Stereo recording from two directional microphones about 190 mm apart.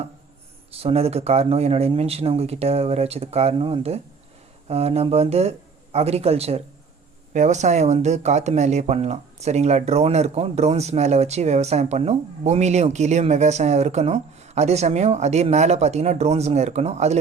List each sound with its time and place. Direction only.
0.7 s speech: 30° right (ahead or behind)